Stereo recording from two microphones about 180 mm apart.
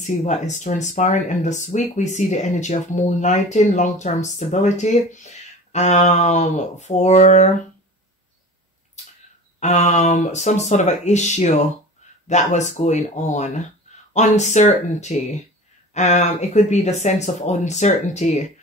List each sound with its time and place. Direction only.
0.0 s speech: 40° left (ahead or behind)
9.6 s speech: 40° left (ahead or behind)